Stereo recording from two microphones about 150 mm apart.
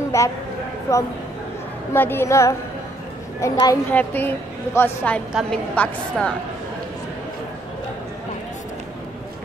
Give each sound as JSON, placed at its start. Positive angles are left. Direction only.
{"t": 0.1, "sound": "a woman's voice", "side_deg": 20}